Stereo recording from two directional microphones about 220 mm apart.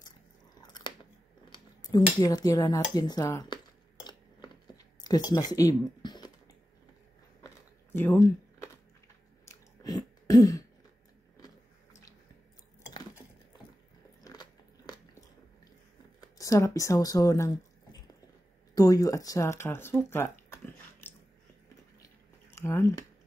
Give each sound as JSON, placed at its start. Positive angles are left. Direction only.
{"t": 0.6, "sound": "chewing", "side_deg": 20}
{"t": 1.5, "sound": "scissors", "side_deg": 20}
{"t": 2.1, "sound": "speech", "side_deg": 15}
{"t": 4.0, "sound": "a sound", "side_deg": 20}
{"t": 9.5, "sound": "throat clearing", "side_deg": 15}
{"t": 14.2, "sound": "biting", "side_deg": 20}
{"t": 16.3, "sound": "speech", "side_deg": 15}
{"t": 18.8, "sound": "speech", "side_deg": 15}
{"t": 22.0, "sound": "chewing", "side_deg": 10}